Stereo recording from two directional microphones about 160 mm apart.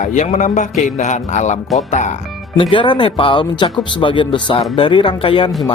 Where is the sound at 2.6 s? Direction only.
30° left (ahead or behind).